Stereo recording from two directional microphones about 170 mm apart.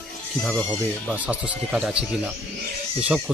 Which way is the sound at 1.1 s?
10° right (ahead or behind).